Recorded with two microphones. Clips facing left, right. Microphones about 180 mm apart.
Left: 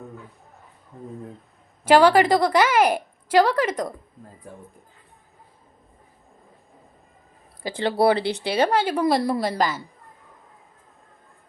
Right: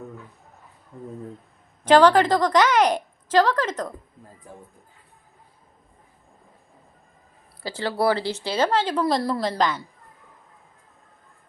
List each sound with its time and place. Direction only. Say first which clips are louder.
1.8 s a woman's voice: even; 10° left (ahead or behind)
7.6 s speech: left 3 dB; 20° left (ahead or behind)
8.2 s speech: left 3 dB; 65° left (ahead or behind)
8.7 s a woman's voice: left 2 dB; 10° left (ahead or behind)